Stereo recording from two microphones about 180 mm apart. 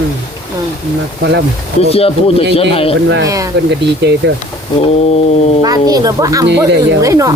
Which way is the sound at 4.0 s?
70° right (ahead or behind).